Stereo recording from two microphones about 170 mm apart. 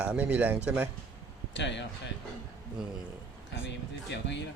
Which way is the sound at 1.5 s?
90° left.